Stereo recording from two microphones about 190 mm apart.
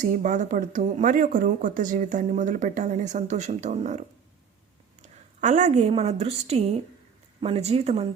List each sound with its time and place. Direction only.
0.0 s speech: 40° right (ahead or behind)
5.0 s a woman's voice: 40° right (ahead or behind)